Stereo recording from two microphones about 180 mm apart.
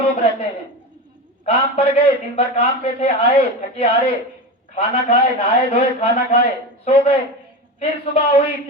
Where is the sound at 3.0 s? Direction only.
30° left (ahead or behind).